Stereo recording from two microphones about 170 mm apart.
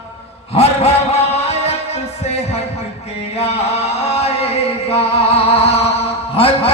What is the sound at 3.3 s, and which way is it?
Music, 40° left (ahead or behind).